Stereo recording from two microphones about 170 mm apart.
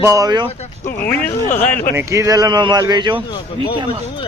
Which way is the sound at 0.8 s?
50° left (ahead or behind).